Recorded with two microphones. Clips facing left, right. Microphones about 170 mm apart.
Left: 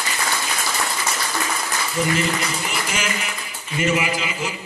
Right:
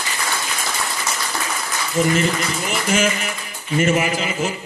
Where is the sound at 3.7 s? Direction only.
45° right (ahead or behind).